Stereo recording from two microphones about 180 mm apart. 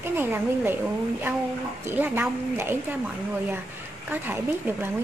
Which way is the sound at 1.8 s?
10° right (ahead or behind).